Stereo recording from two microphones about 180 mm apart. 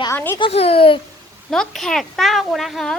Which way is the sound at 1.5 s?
Centre (ahead or behind).